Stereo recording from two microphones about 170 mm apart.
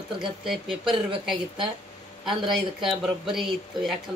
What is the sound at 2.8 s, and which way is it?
Speech, centre (ahead or behind).